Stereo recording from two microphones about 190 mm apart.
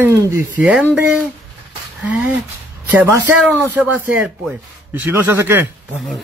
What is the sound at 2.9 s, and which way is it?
Speech, 10° right (ahead or behind).